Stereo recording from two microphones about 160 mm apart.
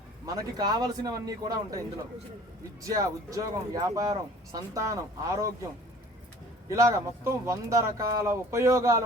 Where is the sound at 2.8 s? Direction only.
20° right (ahead or behind).